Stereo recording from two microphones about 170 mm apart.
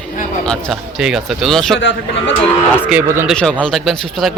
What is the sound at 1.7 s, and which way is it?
Speech, 90° left.